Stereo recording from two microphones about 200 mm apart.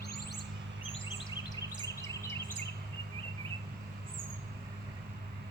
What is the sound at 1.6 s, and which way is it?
Chirp, 15° left (ahead or behind).